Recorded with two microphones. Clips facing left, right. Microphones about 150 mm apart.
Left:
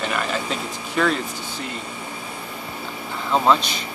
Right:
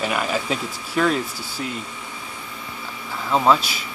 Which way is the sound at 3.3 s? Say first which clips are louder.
Right 1 dB; 5° right (ahead or behind).